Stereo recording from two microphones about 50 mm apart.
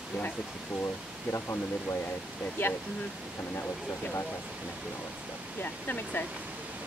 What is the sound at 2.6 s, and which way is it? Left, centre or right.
Speech, left.